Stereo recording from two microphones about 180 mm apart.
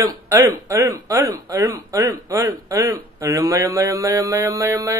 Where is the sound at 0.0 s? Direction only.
15° right (ahead or behind).